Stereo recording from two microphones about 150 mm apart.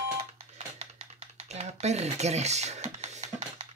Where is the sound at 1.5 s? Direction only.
45° right (ahead or behind).